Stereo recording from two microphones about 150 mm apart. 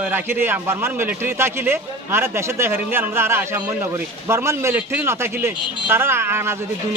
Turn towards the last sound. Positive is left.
turn(degrees=-15)  # may be behind; listen again after turning